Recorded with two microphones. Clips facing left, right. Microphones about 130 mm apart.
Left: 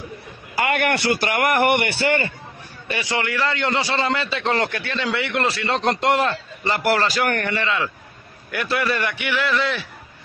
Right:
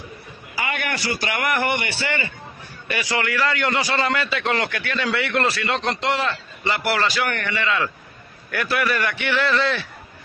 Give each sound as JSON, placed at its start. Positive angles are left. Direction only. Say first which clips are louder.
{"t": 0.6, "sound": "a man's voice", "louder": "left 6 dB", "side_deg": 65}
{"t": 2.9, "sound": "a man's voice", "louder": "even", "side_deg": 25}
{"t": 5.7, "sound": "a man's voice", "louder": "left 3 dB", "side_deg": 40}
{"t": 8.5, "sound": "a man's voice", "louder": "even", "side_deg": 20}